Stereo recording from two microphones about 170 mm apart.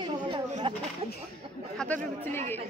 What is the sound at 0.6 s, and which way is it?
Speech, 30° right (ahead or behind).